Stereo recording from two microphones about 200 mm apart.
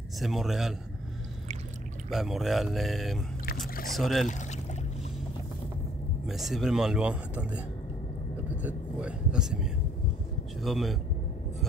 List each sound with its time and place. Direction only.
0.2 s speech: centre (ahead or behind)
2.0 s speech: centre (ahead or behind)
4.3 s boat: 40° left (ahead or behind)
6.2 s speech: centre (ahead or behind)
8.6 s speech: 5° right (ahead or behind)